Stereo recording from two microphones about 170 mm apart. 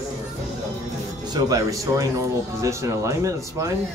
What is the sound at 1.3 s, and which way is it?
Speech, 20° right (ahead or behind).